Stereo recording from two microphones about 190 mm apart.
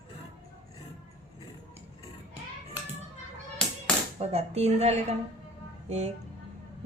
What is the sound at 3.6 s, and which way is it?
Tap, 5° left (ahead or behind).